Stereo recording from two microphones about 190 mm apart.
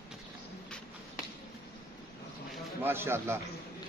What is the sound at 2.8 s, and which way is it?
Speech, 10° right (ahead or behind).